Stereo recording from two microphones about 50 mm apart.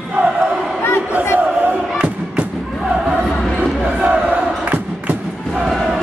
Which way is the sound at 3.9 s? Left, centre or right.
Right.